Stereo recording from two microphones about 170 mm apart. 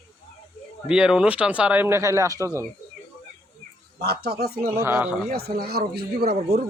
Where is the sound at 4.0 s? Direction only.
70° right (ahead or behind).